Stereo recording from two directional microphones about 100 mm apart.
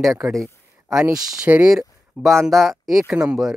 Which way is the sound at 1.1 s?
10° right (ahead or behind).